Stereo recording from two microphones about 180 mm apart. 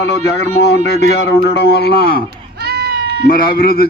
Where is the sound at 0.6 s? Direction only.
65° left (ahead or behind).